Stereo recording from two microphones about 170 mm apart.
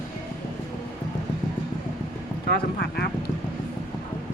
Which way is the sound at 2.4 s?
70° left (ahead or behind).